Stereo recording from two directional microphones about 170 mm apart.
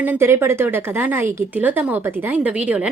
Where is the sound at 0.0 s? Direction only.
15° right (ahead or behind).